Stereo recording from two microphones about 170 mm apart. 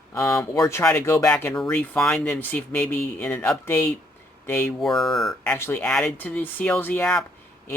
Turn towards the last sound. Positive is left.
turn(degrees=5)  # may be behind; listen again after turning